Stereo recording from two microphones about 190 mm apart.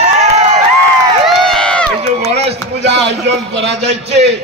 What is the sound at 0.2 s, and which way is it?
Crowd, 35° right (ahead or behind).